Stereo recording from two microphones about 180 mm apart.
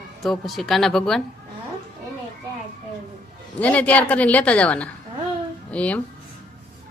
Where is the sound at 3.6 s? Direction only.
10° left (ahead or behind).